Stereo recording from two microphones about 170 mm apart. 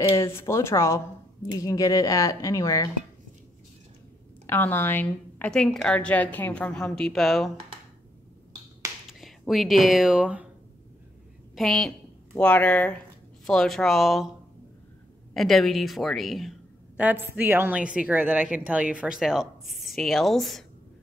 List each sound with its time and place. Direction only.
0.4 s a woman's voice: 15° left (ahead or behind)
4.5 s a woman's voice: 10° left (ahead or behind)
9.5 s a woman's voice: centre (ahead or behind)
11.5 s a woman's voice: centre (ahead or behind)
15.3 s a woman's voice: centre (ahead or behind)